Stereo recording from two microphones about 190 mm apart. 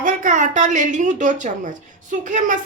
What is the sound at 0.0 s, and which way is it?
A woman's voice, 40° right (ahead or behind).